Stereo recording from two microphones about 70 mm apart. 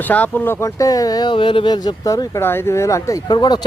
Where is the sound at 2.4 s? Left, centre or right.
Left.